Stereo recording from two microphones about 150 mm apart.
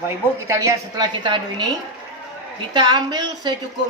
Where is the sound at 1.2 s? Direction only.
30° right (ahead or behind).